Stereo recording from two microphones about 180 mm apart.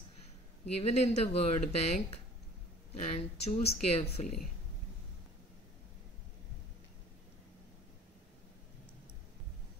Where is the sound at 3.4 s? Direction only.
35° left (ahead or behind).